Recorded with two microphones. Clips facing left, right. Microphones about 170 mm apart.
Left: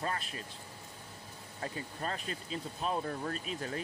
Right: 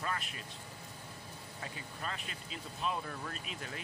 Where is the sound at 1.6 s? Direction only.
40° left (ahead or behind).